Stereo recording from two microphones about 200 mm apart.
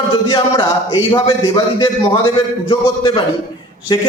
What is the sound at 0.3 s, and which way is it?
A man's voice, 20° left (ahead or behind).